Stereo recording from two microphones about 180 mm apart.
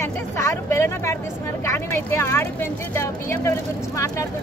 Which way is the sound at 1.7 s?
15° left (ahead or behind).